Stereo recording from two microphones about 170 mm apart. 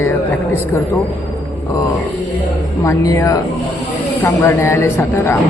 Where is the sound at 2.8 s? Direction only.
20° left (ahead or behind).